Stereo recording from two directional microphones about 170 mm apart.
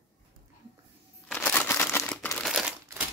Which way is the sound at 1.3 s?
10° left (ahead or behind).